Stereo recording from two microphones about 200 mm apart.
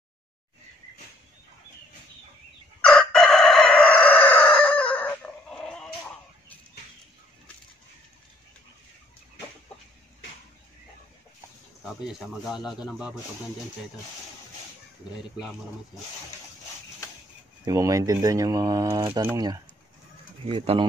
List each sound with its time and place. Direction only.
2.8 s chicken: 5° left (ahead or behind)
11.8 s a man's voice: centre (ahead or behind)
17.6 s speech: 15° right (ahead or behind)